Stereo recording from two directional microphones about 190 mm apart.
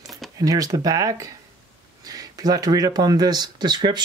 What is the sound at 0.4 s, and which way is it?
Speech, 20° right (ahead or behind).